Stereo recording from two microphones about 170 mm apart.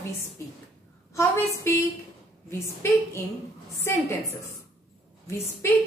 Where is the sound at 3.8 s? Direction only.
15° left (ahead or behind).